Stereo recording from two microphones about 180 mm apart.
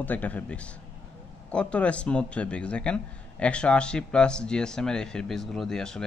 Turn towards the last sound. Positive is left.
turn(degrees=5)  # may be behind; listen again after turning